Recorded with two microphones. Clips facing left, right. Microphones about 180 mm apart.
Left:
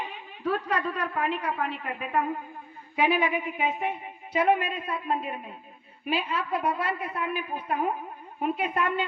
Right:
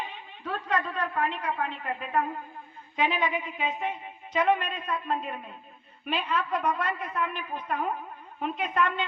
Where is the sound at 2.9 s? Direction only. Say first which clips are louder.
Left 3 dB; 10° left (ahead or behind).